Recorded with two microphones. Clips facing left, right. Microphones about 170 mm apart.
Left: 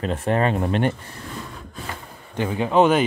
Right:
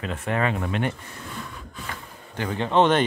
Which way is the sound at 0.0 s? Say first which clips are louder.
Left 4 dB; 35° left (ahead or behind).